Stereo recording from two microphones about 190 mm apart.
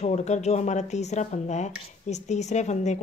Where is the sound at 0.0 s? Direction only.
35° left (ahead or behind).